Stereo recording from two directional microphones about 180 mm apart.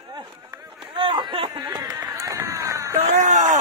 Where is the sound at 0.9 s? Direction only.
25° right (ahead or behind).